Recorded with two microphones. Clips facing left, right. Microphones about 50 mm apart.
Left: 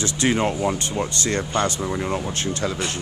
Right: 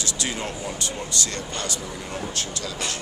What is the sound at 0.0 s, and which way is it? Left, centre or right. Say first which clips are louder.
Speech: left 9 dB; left.